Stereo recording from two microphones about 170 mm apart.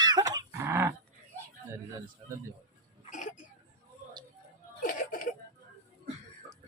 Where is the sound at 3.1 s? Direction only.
45° left (ahead or behind).